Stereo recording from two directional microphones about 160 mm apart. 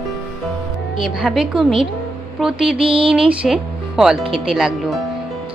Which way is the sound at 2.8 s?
35° right (ahead or behind).